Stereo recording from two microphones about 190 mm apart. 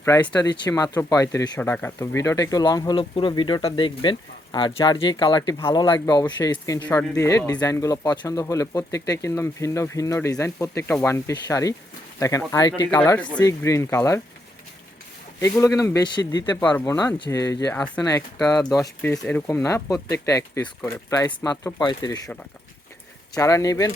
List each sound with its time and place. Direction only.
0.0 s speech: 15° left (ahead or behind)
13.0 s speech: 5° left (ahead or behind)
15.4 s speech: 15° left (ahead or behind)
23.4 s speech: 15° left (ahead or behind)